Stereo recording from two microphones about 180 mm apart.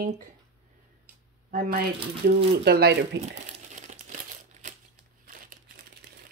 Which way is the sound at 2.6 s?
65° right (ahead or behind).